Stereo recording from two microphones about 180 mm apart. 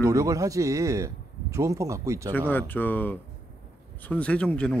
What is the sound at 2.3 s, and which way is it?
Speech, 10° left (ahead or behind).